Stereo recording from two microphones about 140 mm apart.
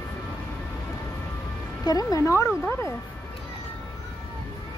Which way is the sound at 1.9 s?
25° left (ahead or behind).